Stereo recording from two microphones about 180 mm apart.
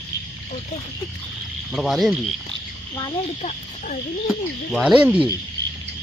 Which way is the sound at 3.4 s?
45° left (ahead or behind).